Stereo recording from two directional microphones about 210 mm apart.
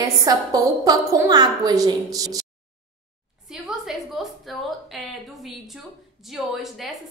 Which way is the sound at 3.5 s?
Centre (ahead or behind).